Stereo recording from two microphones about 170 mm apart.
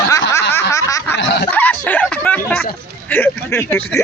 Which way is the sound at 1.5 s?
10° left (ahead or behind).